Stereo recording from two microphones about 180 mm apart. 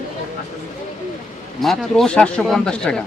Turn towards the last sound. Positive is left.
turn(degrees=5)  # may be behind; listen again after turning